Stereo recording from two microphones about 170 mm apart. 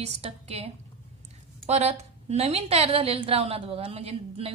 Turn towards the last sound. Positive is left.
turn(degrees=-35)  # may be behind; listen again after turning